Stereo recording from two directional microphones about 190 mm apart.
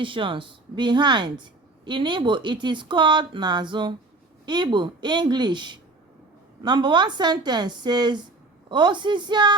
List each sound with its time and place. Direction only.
0.0 s a woman's voice: 25° right (ahead or behind)